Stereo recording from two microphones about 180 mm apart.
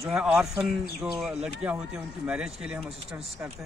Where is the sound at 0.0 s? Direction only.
5° right (ahead or behind).